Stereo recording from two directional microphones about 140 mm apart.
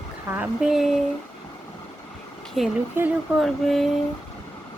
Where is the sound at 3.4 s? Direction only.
Centre (ahead or behind).